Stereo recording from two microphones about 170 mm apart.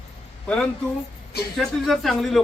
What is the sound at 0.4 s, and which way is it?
A man's voice, 5° left (ahead or behind).